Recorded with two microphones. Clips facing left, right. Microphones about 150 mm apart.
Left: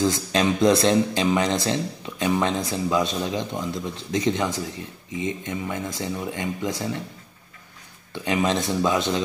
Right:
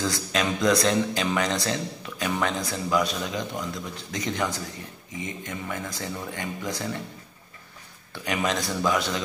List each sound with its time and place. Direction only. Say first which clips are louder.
0.0 s speech: left 5 dB; 25° left (ahead or behind)
8.1 s speech: left 4 dB; 20° left (ahead or behind)